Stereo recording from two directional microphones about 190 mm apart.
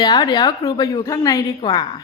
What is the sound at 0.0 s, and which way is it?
A woman's voice, 20° left (ahead or behind).